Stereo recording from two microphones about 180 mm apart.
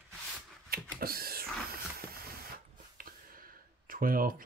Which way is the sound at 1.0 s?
55° right (ahead or behind).